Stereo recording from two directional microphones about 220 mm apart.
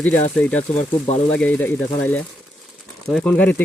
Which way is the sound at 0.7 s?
30° left (ahead or behind).